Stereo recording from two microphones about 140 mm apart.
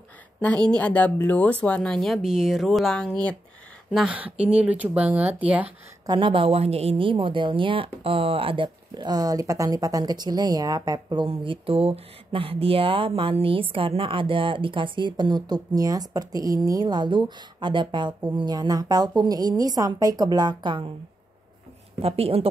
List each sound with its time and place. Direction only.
0.4 s a woman's voice: 10° left (ahead or behind)
3.9 s speech: 5° right (ahead or behind)
6.0 s a woman's voice: 35° right (ahead or behind)
22.0 s a woman's voice: 45° right (ahead or behind)